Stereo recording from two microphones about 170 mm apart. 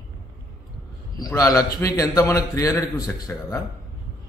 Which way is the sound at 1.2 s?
20° left (ahead or behind).